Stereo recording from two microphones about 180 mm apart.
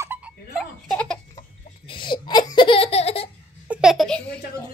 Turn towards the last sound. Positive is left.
turn(degrees=5)  # may be behind; listen again after turning